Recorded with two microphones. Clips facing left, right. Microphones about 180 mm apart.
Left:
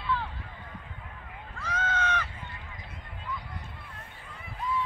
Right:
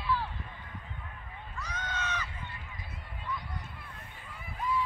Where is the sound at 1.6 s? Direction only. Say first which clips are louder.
Left 8 dB; 90° left; by 2.3 s 60° left (ahead or behind).